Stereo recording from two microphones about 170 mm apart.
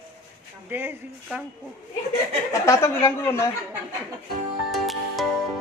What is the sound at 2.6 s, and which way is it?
Speech, 15° left (ahead or behind).